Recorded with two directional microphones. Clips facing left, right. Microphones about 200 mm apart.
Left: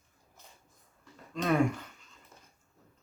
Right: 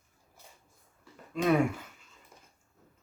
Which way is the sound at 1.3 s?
5° right (ahead or behind).